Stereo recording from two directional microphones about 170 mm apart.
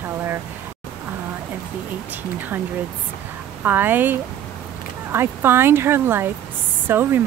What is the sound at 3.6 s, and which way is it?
Speech, 10° right (ahead or behind).